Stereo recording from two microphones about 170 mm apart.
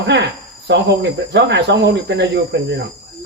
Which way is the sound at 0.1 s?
90° right.